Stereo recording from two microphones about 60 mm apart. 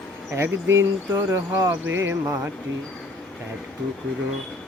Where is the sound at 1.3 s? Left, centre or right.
Right.